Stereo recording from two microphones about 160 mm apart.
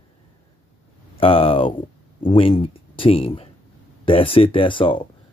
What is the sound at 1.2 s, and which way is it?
Speech, 35° left (ahead or behind).